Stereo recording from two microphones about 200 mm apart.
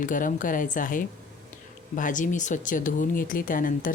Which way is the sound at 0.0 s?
40° left (ahead or behind).